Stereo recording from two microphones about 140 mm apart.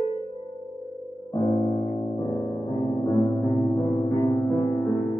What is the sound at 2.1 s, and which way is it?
Music, 25° left (ahead or behind).